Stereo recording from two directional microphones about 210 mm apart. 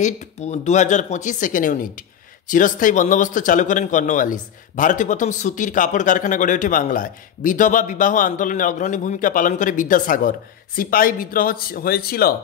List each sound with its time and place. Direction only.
0.0 s speech: 35° left (ahead or behind)